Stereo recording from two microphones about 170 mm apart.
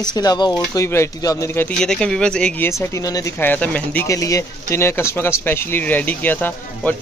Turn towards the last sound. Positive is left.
turn(degrees=10)  # may be behind; listen again after turning